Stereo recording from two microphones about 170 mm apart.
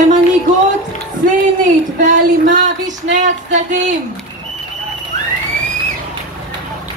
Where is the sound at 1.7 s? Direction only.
50° right (ahead or behind).